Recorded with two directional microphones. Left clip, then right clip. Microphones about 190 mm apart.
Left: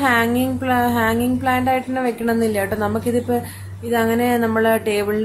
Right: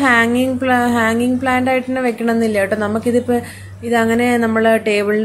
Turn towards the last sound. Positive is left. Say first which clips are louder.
# right 4 dB
turn(degrees=-15)  # may be behind; listen again after turning